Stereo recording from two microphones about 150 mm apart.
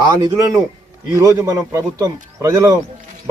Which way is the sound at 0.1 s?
25° right (ahead or behind).